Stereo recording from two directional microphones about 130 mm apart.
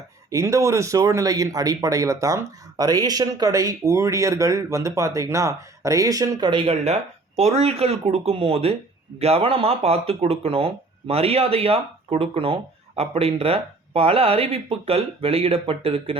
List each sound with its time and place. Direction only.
0.3 s speech: 25° right (ahead or behind); by 16.1 s 45° right (ahead or behind)